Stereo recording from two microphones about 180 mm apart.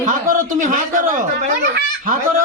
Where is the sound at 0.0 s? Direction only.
45° right (ahead or behind).